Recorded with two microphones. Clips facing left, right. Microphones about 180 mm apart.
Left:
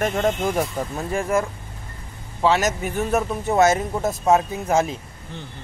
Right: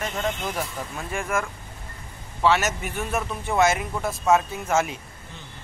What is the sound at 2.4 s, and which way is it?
A man's voice, 35° left (ahead or behind).